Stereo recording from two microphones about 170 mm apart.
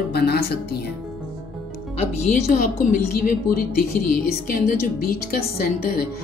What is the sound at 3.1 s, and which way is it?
Speech, 60° left (ahead or behind).